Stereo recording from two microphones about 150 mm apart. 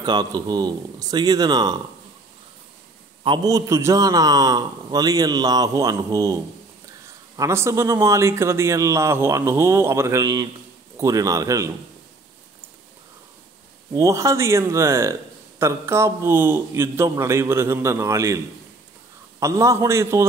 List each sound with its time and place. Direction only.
0.0 s a man's voice: 30° right (ahead or behind)
3.3 s a man's voice: 25° right (ahead or behind)
13.9 s a man's voice: 20° right (ahead or behind)
19.4 s a man's voice: 20° right (ahead or behind)